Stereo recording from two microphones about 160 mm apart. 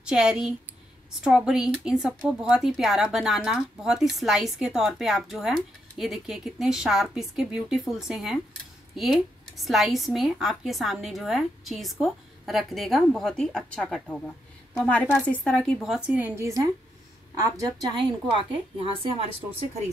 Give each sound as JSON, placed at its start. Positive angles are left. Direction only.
{"t": 0.0, "sound": "a woman's voice", "side_deg": -5}